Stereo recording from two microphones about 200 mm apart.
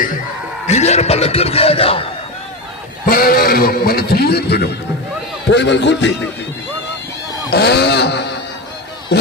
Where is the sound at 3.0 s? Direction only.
45° left (ahead or behind); by 6.1 s 60° left (ahead or behind).